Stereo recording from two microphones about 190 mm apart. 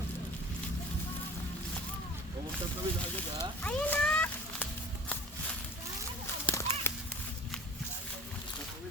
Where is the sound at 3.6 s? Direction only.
5° left (ahead or behind).